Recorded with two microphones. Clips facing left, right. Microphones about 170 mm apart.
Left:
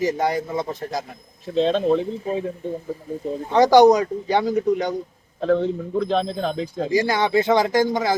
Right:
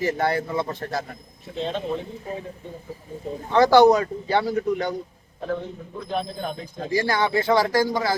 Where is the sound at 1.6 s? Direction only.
85° left.